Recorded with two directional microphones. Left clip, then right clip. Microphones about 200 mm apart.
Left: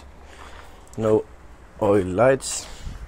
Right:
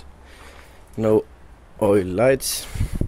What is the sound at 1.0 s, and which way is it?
Speech, 35° right (ahead or behind).